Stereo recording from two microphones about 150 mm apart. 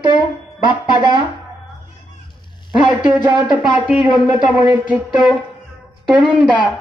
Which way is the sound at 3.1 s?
10° right (ahead or behind).